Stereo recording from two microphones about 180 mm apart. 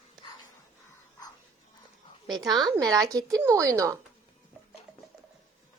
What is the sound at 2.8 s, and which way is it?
A woman's voice, 20° right (ahead or behind).